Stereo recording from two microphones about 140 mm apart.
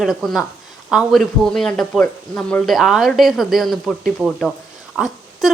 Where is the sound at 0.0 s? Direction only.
Centre (ahead or behind).